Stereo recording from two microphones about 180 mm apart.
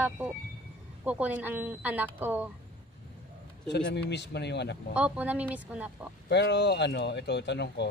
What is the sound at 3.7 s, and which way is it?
Speech, 70° left (ahead or behind).